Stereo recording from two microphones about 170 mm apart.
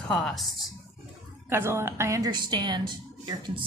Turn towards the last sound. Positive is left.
turn(degrees=-25)  # may be behind; listen again after turning